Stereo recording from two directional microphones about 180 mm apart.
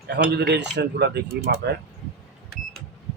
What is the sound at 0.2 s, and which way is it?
Speech, 65° right (ahead or behind).